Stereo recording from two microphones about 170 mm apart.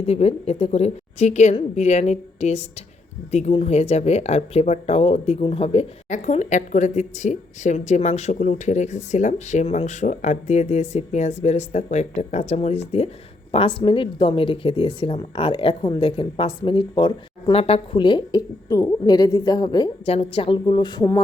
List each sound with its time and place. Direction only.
0.0 s a woman's voice: 35° left (ahead or behind)
20.1 s a woman's voice: 35° left (ahead or behind)